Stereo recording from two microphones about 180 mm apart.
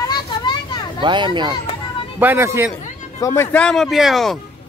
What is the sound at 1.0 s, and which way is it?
Speech, 25° right (ahead or behind).